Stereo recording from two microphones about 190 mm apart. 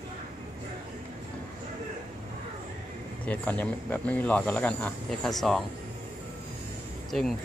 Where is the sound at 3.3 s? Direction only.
5° left (ahead or behind).